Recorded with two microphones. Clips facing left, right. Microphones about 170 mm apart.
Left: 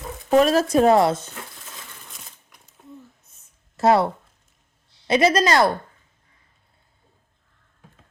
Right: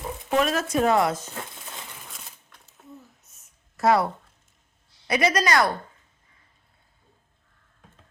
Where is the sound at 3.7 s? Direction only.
25° left (ahead or behind).